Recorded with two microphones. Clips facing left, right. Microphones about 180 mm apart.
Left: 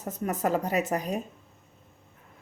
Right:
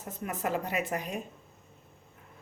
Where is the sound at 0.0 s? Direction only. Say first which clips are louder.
Left 6 dB; 40° left (ahead or behind).